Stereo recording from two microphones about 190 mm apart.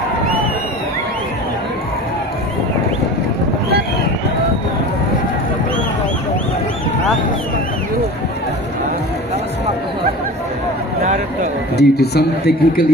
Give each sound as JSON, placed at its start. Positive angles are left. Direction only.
{"t": 11.8, "sound": "a man's voice", "side_deg": 60}